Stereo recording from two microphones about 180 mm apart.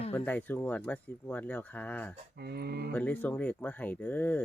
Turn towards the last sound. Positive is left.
turn(degrees=10)  # may be behind; listen again after turning